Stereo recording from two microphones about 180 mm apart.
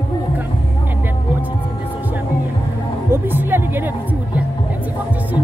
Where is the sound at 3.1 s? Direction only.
10° right (ahead or behind).